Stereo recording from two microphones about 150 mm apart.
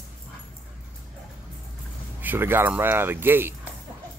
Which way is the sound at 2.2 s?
15° right (ahead or behind).